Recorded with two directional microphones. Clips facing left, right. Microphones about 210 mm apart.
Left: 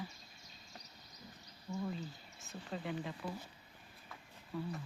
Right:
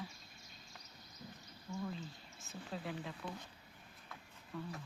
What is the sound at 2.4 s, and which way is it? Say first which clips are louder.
Speech: left 2 dB; centre (ahead or behind).